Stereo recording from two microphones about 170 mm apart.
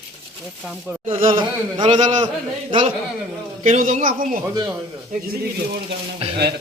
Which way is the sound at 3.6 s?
50° right (ahead or behind).